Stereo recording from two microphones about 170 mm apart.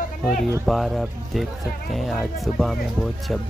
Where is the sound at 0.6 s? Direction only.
Centre (ahead or behind).